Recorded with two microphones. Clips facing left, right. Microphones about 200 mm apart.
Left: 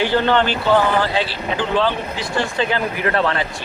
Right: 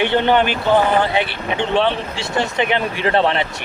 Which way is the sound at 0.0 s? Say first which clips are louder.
Right 1 dB; 20° right (ahead or behind).